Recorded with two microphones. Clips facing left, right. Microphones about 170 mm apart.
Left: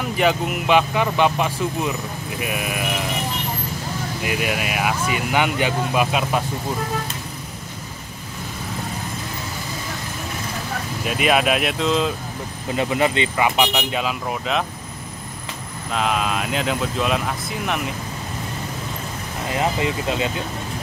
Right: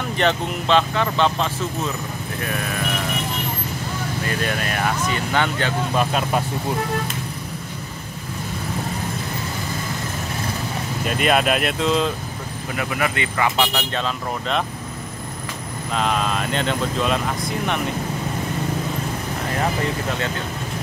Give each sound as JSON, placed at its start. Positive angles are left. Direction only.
{"t": 0.2, "sound": "speech", "side_deg": 10}
{"t": 4.2, "sound": "speech", "side_deg": 10}
{"t": 11.1, "sound": "speech", "side_deg": 0}
{"t": 12.7, "sound": "speech", "side_deg": 25}
{"t": 15.9, "sound": "speech", "side_deg": 5}